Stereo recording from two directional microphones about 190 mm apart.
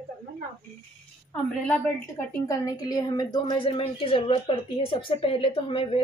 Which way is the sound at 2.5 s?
20° left (ahead or behind).